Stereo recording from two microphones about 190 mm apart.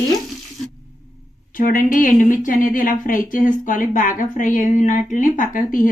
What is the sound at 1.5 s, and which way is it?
Speech, 45° left (ahead or behind).